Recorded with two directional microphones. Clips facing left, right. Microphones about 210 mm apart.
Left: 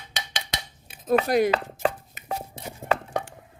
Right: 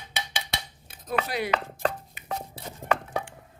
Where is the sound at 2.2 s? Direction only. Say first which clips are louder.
Left 2 dB; 45° left (ahead or behind).